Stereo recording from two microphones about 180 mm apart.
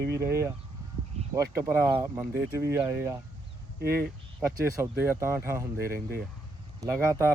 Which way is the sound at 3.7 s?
60° right (ahead or behind).